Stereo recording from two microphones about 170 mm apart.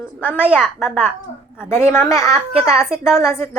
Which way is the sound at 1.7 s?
15° left (ahead or behind).